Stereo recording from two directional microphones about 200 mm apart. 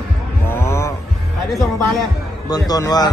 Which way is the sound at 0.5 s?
15° left (ahead or behind).